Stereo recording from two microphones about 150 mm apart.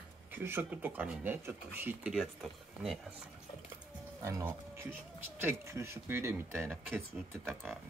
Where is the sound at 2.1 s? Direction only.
Centre (ahead or behind).